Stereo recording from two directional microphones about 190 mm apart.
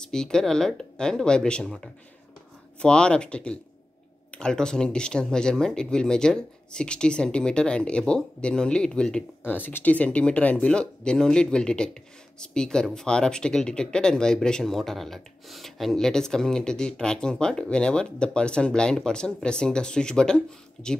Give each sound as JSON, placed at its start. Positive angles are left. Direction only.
{"t": 0.0, "sound": "speech", "side_deg": 5}